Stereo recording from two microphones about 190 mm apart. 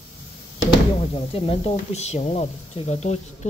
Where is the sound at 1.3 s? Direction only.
30° left (ahead or behind).